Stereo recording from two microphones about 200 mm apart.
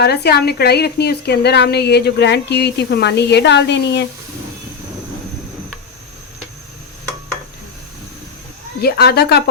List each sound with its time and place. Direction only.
0.0 s a woman's voice: 55° left (ahead or behind)
8.8 s a woman's voice: 55° left (ahead or behind)